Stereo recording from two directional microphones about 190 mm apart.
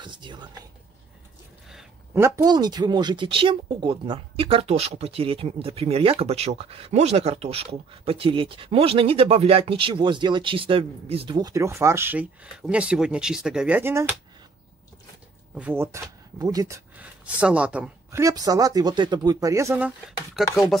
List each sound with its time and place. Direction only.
0.0 s speech: 25° right (ahead or behind)
2.1 s speech: 15° right (ahead or behind)
15.5 s speech: 10° right (ahead or behind)